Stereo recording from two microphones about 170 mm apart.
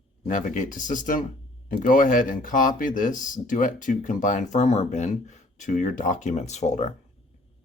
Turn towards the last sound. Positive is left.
turn(degrees=45)  # may be behind; listen again after turning